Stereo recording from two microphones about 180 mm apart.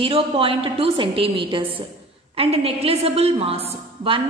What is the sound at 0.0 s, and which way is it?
A woman's voice, 30° right (ahead or behind).